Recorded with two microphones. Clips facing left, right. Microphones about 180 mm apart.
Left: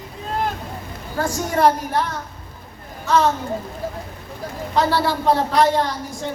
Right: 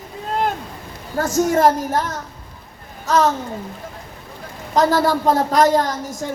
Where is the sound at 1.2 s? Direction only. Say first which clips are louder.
Right 3 dB; 45° right (ahead or behind).